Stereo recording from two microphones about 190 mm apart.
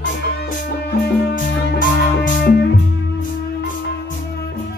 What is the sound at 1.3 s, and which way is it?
Music, 45° left (ahead or behind).